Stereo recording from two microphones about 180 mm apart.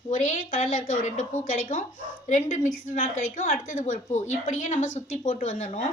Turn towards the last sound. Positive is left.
turn(degrees=45)  # may be behind; listen again after turning